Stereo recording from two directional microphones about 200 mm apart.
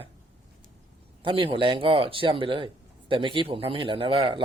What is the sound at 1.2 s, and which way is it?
A man's voice, 25° right (ahead or behind).